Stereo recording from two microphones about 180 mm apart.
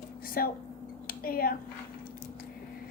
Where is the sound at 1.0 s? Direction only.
55° left (ahead or behind).